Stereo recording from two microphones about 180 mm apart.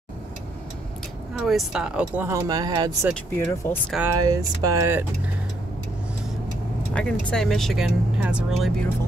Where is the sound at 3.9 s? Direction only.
15° right (ahead or behind).